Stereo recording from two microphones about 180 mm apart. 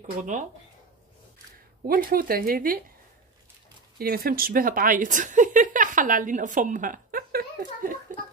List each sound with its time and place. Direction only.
0.0 s speech: 45° right (ahead or behind)
1.9 s speech: 50° right (ahead or behind)
4.0 s speech: 55° right (ahead or behind)